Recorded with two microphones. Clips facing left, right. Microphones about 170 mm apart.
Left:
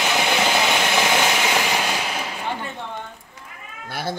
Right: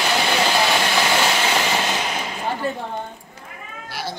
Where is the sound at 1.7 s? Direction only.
10° left (ahead or behind).